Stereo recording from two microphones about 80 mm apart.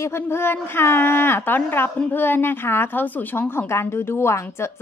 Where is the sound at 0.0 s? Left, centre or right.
Left.